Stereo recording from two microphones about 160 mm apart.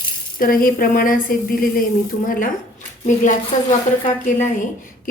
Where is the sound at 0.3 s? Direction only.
60° left (ahead or behind).